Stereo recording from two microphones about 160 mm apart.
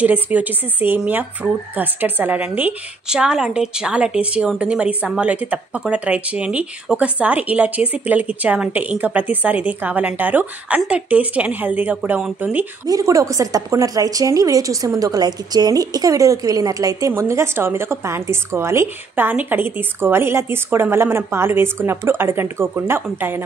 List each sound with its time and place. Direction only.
0.0 s speech: 10° right (ahead or behind)